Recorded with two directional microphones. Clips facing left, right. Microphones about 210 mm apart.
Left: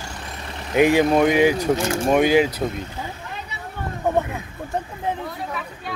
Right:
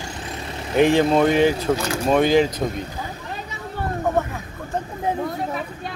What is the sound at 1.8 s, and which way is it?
Speech, 25° left (ahead or behind).